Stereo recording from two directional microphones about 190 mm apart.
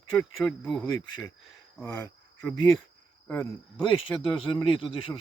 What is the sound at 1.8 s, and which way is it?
Cricket, 15° left (ahead or behind).